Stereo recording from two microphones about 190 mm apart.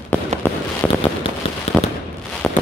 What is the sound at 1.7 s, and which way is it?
Fireworks, 35° left (ahead or behind).